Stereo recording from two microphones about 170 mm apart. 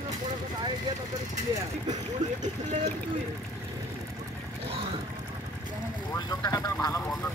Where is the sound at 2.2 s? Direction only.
45° right (ahead or behind).